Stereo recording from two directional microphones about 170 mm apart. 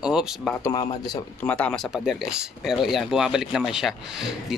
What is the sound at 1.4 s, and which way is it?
Speech, 5° left (ahead or behind).